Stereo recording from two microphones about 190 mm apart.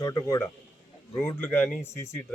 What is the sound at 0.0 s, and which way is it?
A man's voice, 15° left (ahead or behind).